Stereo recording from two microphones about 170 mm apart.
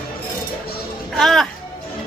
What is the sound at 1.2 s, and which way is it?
Music, centre (ahead or behind).